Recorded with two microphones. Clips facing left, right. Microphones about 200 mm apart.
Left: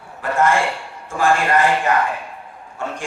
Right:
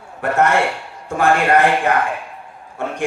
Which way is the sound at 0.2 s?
65° right (ahead or behind).